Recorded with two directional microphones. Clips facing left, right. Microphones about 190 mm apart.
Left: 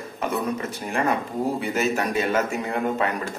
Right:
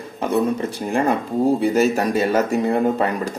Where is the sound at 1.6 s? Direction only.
35° right (ahead or behind).